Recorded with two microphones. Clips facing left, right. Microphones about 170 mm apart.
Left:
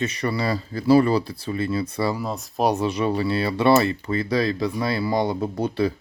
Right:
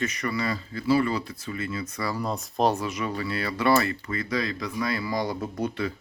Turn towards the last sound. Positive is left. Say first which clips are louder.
# left 6 dB
turn(degrees=30)  # may be behind; listen again after turning